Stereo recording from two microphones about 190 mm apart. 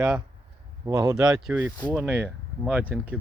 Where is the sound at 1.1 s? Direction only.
5° right (ahead or behind).